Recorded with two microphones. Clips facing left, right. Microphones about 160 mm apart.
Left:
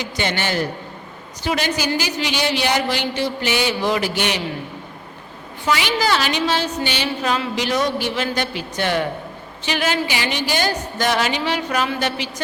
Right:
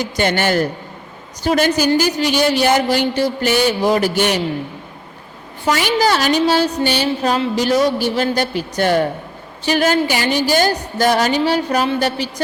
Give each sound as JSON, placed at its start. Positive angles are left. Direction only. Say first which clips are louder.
{"t": 0.0, "sound": "a woman's voice", "louder": "right 6 dB", "side_deg": -50}
{"t": 5.6, "sound": "a woman's voice", "louder": "right 4 dB", "side_deg": -45}